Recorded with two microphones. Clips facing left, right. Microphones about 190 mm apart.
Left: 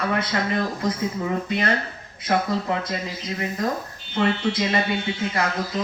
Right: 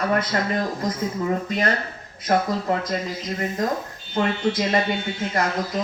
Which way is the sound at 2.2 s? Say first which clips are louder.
Right 1 dB; 45° right (ahead or behind).